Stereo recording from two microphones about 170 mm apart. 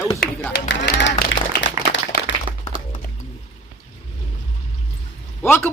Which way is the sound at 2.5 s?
30° right (ahead or behind).